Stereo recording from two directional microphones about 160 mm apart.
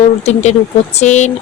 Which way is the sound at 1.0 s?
45° left (ahead or behind).